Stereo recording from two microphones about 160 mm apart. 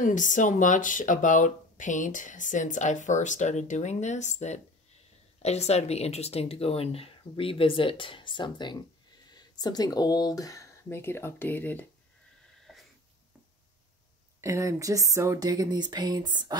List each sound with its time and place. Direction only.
0.0 s speech: 55° left (ahead or behind); by 11.8 s 10° left (ahead or behind)
12.7 s a sound: centre (ahead or behind)
14.4 s speech: 20° right (ahead or behind)